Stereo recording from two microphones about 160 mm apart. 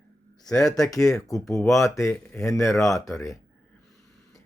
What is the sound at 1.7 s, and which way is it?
Speech, 20° left (ahead or behind).